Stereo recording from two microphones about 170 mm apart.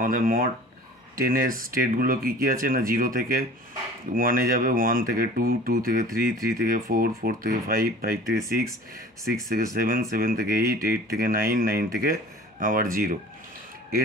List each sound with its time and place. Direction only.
0.0 s speech: 55° right (ahead or behind)
9.8 s speech: 60° right (ahead or behind)